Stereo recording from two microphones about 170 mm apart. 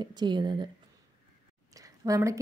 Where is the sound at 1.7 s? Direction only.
20° right (ahead or behind).